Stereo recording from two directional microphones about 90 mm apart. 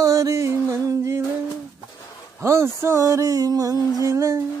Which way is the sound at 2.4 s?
30° right (ahead or behind).